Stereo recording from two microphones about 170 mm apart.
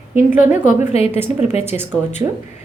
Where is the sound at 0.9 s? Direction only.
35° left (ahead or behind).